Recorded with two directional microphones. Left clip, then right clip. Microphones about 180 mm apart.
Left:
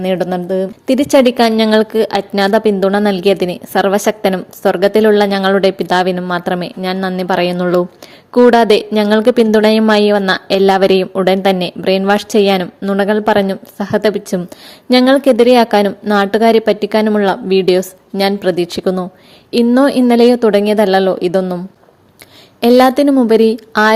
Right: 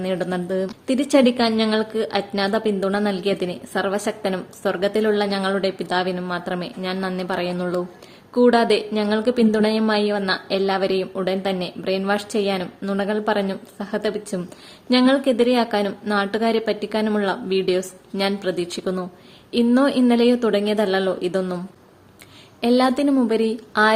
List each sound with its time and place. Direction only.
0.0 s a woman's voice: 35° left (ahead or behind)
22.6 s speech: 40° left (ahead or behind)